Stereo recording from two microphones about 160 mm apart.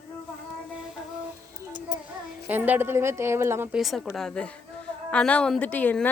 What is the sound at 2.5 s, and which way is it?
Speech, 10° right (ahead or behind).